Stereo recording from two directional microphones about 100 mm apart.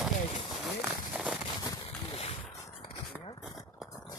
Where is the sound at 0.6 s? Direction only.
5° right (ahead or behind).